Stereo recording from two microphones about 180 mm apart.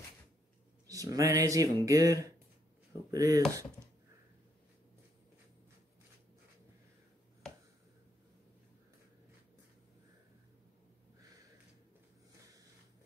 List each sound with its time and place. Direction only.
0.8 s speech: 20° right (ahead or behind)